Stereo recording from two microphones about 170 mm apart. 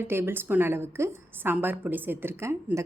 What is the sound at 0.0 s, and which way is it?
A woman's voice, 15° right (ahead or behind).